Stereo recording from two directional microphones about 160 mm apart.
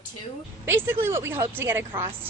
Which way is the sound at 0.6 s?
15° right (ahead or behind).